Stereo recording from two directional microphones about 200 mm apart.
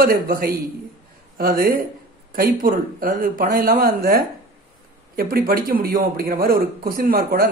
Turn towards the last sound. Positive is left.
turn(degrees=-45)  # may be behind; listen again after turning